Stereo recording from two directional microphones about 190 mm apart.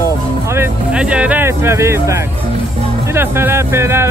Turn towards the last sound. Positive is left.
turn(degrees=-15)  # may be behind; listen again after turning